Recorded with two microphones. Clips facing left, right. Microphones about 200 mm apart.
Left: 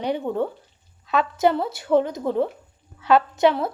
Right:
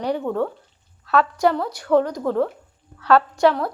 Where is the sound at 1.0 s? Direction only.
20° left (ahead or behind).